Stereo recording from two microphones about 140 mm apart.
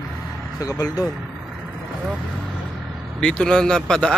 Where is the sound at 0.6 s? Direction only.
25° left (ahead or behind).